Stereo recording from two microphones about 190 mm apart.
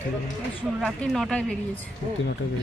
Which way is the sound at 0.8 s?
Centre (ahead or behind).